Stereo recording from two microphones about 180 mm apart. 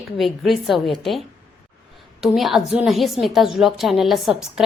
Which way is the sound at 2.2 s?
Centre (ahead or behind).